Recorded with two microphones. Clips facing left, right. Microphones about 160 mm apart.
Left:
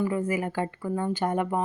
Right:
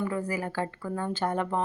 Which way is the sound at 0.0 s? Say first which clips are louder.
Left 4 dB; 20° left (ahead or behind).